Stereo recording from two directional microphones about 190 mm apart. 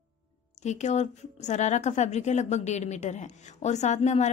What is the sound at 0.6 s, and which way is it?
A woman's voice, 40° left (ahead or behind).